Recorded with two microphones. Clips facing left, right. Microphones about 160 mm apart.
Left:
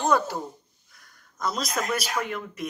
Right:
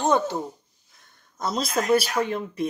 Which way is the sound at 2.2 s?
30° right (ahead or behind).